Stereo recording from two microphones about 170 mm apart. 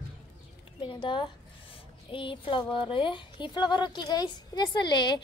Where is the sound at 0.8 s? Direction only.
30° left (ahead or behind).